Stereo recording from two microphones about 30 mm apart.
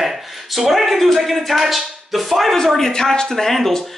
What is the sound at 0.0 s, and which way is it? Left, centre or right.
Speech, centre.